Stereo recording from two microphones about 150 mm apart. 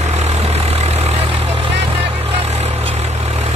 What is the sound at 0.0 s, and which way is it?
Vehicle, 45° right (ahead or behind).